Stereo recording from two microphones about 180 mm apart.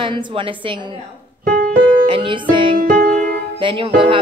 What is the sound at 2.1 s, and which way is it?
Music, 30° right (ahead or behind).